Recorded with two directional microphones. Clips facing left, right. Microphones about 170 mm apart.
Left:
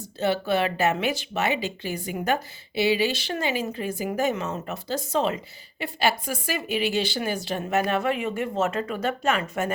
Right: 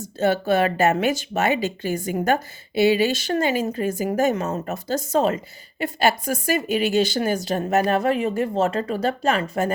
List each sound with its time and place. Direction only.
0.0 s a woman's voice: 45° right (ahead or behind)